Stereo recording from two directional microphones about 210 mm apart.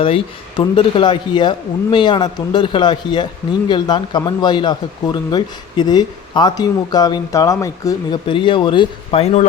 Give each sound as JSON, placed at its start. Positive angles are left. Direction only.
{"t": 0.0, "sound": "speech", "side_deg": 25}